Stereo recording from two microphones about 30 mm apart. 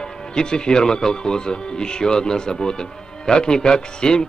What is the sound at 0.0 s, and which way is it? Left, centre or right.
Speech, left.